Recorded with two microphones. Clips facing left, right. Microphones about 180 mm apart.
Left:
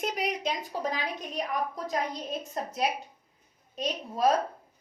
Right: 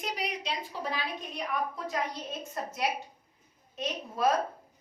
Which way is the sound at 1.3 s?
40° left (ahead or behind).